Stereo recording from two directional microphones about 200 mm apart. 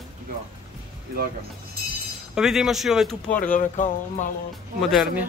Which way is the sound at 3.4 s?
40° left (ahead or behind).